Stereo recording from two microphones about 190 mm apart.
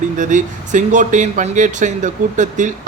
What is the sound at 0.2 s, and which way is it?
Speech, 40° right (ahead or behind).